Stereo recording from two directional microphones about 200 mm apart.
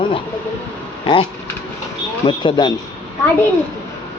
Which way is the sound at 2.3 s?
25° left (ahead or behind).